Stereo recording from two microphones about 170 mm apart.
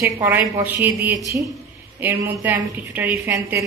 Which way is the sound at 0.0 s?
10° right (ahead or behind).